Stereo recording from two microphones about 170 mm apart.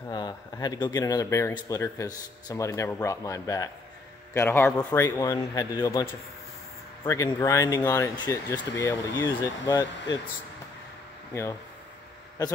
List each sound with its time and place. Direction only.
0.1 s a man's voice: 25° left (ahead or behind)
7.1 s speech: 20° left (ahead or behind)